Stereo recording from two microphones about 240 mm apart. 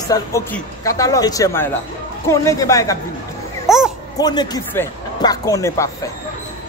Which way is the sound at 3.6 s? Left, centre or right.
Centre.